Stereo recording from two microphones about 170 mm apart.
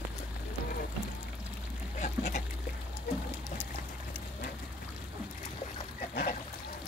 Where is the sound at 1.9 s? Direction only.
45° left (ahead or behind).